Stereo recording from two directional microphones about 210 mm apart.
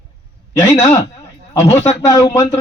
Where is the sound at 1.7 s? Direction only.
30° left (ahead or behind).